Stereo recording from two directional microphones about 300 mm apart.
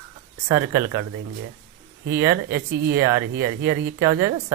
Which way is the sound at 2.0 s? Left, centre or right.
Right.